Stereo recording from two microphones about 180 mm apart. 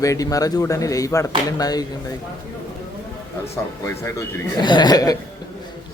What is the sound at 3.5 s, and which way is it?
Speech, 15° left (ahead or behind).